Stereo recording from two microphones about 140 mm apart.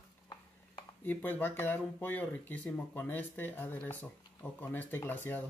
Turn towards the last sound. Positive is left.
turn(degrees=15)  # may be behind; listen again after turning